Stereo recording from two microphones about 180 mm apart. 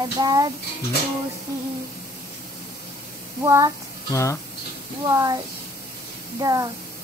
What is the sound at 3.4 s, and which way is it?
Speech, 15° right (ahead or behind).